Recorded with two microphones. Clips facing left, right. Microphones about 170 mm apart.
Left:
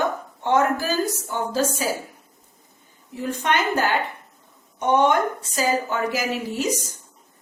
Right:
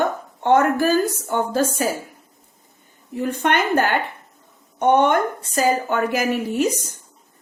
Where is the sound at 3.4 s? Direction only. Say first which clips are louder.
Right 3 dB; 55° right (ahead or behind).